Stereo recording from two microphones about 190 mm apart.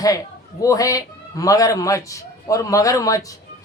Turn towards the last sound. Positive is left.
turn(degrees=15)  # may be behind; listen again after turning